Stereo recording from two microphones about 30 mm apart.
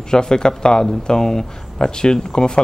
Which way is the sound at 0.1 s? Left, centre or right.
Left.